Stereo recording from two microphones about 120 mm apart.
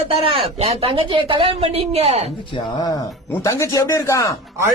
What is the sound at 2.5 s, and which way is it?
Speech, 30° left (ahead or behind).